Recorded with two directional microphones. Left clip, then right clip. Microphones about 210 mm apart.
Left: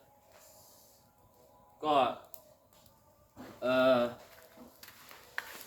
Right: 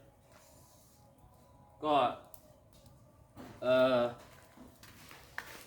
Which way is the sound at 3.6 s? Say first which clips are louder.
Left 1 dB; 10° left (ahead or behind).